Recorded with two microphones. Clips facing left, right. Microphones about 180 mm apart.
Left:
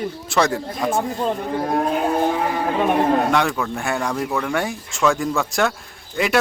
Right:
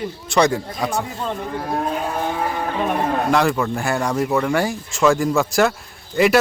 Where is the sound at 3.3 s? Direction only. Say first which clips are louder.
Right 2 dB; centre (ahead or behind).